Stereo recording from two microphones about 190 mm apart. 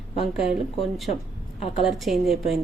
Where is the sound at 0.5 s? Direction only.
Centre (ahead or behind).